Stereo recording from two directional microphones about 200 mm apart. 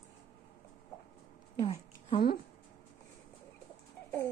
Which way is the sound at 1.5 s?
25° left (ahead or behind).